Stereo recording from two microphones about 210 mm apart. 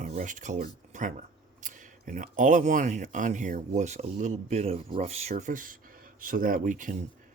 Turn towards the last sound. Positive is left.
turn(degrees=-40)  # may be behind; listen again after turning